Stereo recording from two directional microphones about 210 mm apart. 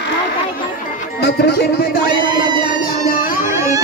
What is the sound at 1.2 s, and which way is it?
Music, 50° left (ahead or behind).